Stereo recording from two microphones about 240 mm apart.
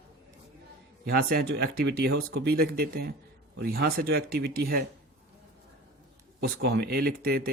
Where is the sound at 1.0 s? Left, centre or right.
Right.